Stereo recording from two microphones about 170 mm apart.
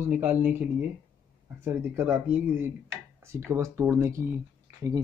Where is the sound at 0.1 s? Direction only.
10° right (ahead or behind).